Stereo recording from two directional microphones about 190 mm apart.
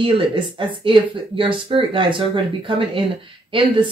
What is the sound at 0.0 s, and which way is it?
Speech, 25° right (ahead or behind).